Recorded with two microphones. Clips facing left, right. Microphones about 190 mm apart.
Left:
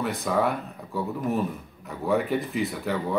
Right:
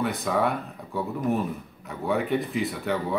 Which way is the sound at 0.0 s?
Centre (ahead or behind).